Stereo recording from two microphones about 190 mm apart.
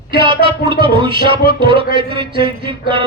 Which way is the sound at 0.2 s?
25° right (ahead or behind).